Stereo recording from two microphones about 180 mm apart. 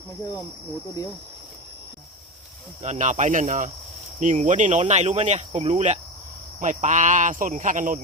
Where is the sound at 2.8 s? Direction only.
40° right (ahead or behind).